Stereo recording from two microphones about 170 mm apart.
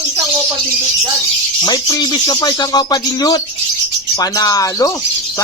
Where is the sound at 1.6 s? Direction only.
20° left (ahead or behind).